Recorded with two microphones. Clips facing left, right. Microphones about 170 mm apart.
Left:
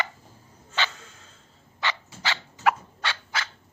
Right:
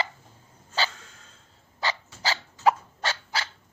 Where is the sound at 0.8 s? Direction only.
35° right (ahead or behind).